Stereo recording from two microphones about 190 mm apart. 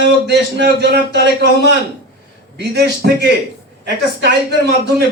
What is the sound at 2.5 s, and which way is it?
Speech, 60° right (ahead or behind).